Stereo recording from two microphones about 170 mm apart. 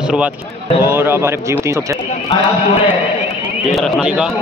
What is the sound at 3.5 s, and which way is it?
Speech, centre (ahead or behind).